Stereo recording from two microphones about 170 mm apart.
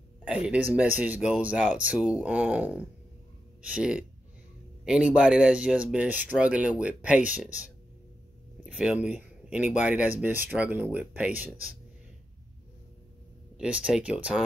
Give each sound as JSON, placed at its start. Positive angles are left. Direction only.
{"t": 0.7, "sound": "speech", "side_deg": -10}
{"t": 8.6, "sound": "speech", "side_deg": -5}
{"t": 13.6, "sound": "speech", "side_deg": -5}